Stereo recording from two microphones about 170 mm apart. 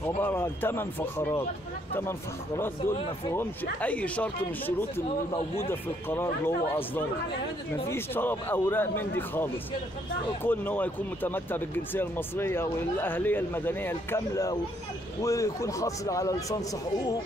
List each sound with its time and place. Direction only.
0.2 s speech: 10° left (ahead or behind)
3.8 s a man's voice: 10° left (ahead or behind)